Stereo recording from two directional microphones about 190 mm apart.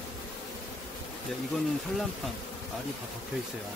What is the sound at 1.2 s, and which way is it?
Speech, centre (ahead or behind).